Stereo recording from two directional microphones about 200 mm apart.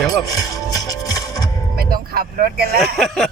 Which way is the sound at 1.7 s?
50° right (ahead or behind).